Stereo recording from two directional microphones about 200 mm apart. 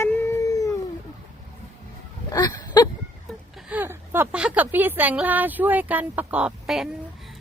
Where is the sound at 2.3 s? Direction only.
20° left (ahead or behind).